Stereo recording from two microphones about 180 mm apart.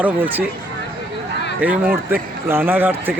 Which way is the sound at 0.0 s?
10° right (ahead or behind).